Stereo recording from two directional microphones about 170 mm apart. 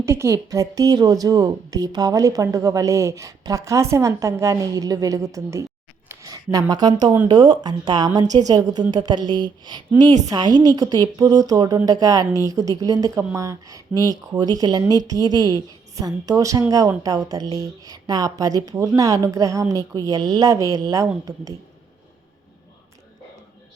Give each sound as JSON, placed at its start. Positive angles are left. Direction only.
{"t": 0.0, "sound": "speech", "side_deg": -15}